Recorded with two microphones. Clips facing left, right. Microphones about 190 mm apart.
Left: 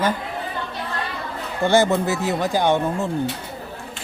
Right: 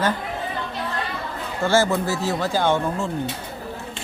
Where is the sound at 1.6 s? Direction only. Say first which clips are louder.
Left 2 dB; 20° left (ahead or behind).